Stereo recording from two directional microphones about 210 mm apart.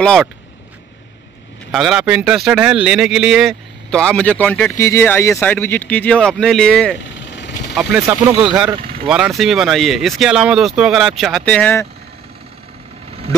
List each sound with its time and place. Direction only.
0.0 s speech: 5° left (ahead or behind)
1.7 s speech: centre (ahead or behind)
7.2 s vehicle: 55° left (ahead or behind)
7.7 s speech: 10° right (ahead or behind); by 11.9 s 10° left (ahead or behind)